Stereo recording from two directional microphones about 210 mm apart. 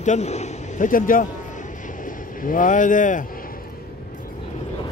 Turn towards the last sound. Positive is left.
turn(degrees=40)  # may be behind; listen again after turning